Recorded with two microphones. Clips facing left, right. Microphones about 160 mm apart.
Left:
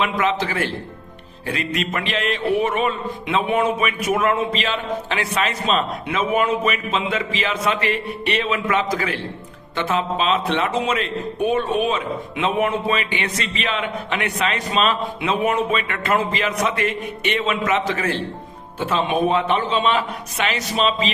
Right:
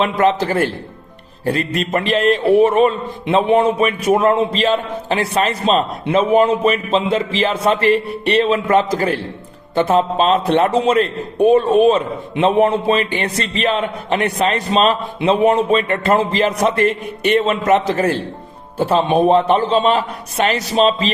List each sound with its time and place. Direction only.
0.0 s a man's voice: 40° right (ahead or behind)